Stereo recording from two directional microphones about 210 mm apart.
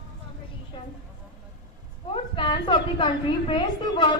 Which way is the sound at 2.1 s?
25° left (ahead or behind).